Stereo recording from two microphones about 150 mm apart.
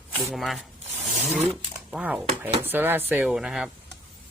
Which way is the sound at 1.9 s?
10° right (ahead or behind).